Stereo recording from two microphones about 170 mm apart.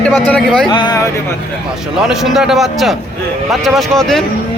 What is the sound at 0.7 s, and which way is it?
Speech, 25° left (ahead or behind).